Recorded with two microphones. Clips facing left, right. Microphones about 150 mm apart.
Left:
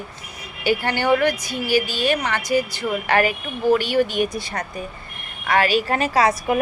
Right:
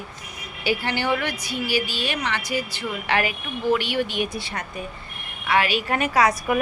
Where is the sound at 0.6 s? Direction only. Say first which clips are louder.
Left 5 dB; 50° left (ahead or behind).